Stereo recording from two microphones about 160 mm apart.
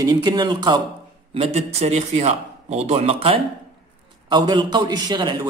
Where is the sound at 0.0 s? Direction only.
25° right (ahead or behind).